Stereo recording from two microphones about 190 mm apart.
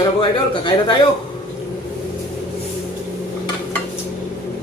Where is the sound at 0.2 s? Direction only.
25° left (ahead or behind).